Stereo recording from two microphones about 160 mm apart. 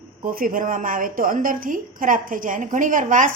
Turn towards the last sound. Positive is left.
turn(degrees=-55)  # may be behind; listen again after turning